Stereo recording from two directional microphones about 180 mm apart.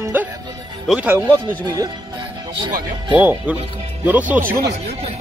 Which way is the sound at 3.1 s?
10° right (ahead or behind).